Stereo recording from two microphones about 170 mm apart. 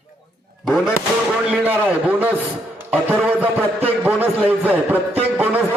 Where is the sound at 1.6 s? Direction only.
10° right (ahead or behind).